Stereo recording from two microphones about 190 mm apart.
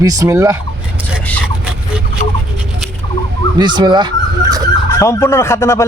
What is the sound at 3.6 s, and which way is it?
Speech, 25° right (ahead or behind).